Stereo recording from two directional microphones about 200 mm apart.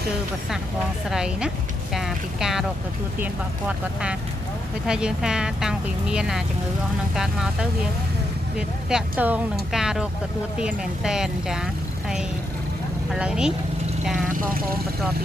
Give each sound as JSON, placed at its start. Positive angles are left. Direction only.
{"t": 1.1, "sound": "speech", "side_deg": -5}
{"t": 8.5, "sound": "speech", "side_deg": -5}